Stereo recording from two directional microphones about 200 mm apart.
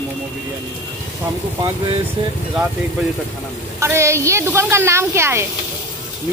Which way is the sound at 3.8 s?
15° right (ahead or behind).